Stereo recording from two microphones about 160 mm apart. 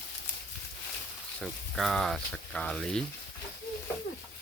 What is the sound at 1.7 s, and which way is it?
Speech, centre (ahead or behind).